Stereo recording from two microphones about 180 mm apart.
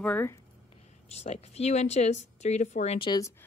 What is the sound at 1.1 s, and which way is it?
A woman's voice, 35° left (ahead or behind).